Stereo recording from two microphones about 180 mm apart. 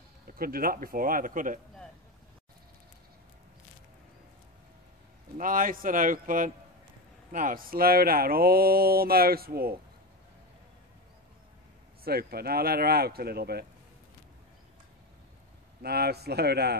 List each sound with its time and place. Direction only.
0.4 s speech: 55° right (ahead or behind)
5.4 s speech: 50° right (ahead or behind)
12.0 s speech: 60° right (ahead or behind)
15.8 s speech: 60° right (ahead or behind)